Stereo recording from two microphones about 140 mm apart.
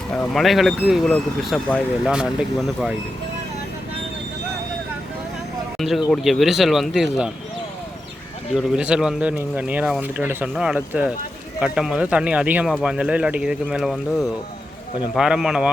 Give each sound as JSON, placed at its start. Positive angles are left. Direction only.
{"t": 0.1, "sound": "speech", "side_deg": 5}
{"t": 6.1, "sound": "speech", "side_deg": 0}
{"t": 8.5, "sound": "speech", "side_deg": -5}